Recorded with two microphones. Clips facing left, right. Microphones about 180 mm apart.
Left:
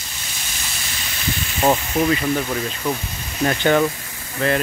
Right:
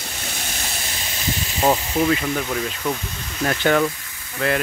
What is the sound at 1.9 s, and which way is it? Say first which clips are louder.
Speech: left 1 dB; 5° left (ahead or behind).